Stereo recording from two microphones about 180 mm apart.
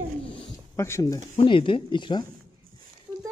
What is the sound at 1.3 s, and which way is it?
Speech, 30° left (ahead or behind).